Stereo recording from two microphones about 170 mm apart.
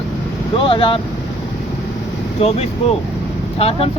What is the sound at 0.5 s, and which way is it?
Speech, 30° left (ahead or behind).